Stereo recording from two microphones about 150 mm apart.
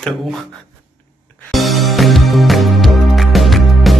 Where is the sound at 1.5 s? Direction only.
Centre (ahead or behind).